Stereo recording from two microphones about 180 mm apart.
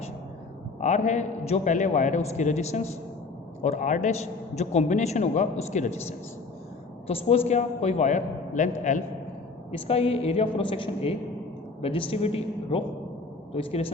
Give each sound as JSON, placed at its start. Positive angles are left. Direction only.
{"t": 0.8, "sound": "a man's voice", "side_deg": 40}
{"t": 7.1, "sound": "a man's voice", "side_deg": 35}
{"t": 9.8, "sound": "a man's voice", "side_deg": 35}